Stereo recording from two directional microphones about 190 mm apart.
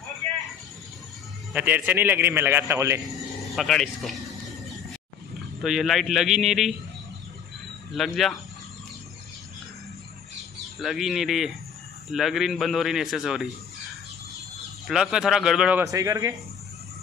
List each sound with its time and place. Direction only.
1.5 s a man's voice: 10° right (ahead or behind)
3.4 s a man's voice: centre (ahead or behind)
5.6 s a man's voice: centre (ahead or behind)
7.9 s a man's voice: centre (ahead or behind)
10.8 s a man's voice: centre (ahead or behind)
14.9 s a man's voice: 5° right (ahead or behind)
15.8 s a man's voice: 20° right (ahead or behind)